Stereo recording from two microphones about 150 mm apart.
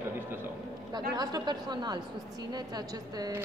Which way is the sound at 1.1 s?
25° right (ahead or behind).